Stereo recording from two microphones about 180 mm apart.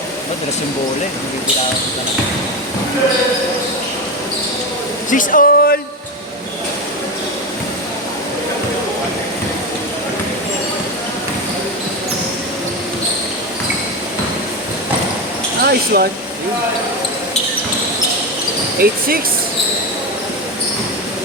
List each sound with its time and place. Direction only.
5.1 s speech: 50° left (ahead or behind)
15.6 s speech: 60° right (ahead or behind)
18.8 s speech: 55° right (ahead or behind)